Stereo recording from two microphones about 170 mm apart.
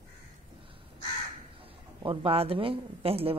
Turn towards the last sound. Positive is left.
turn(degrees=-35)  # may be behind; listen again after turning